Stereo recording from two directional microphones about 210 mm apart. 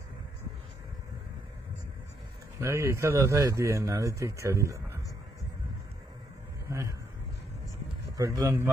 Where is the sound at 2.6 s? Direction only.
15° right (ahead or behind).